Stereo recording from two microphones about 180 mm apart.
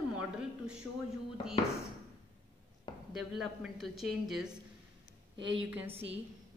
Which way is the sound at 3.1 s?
Centre (ahead or behind).